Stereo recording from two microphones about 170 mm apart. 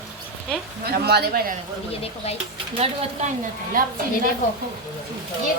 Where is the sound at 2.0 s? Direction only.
35° left (ahead or behind).